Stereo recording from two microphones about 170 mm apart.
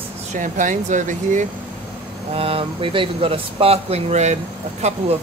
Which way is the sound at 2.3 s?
35° right (ahead or behind).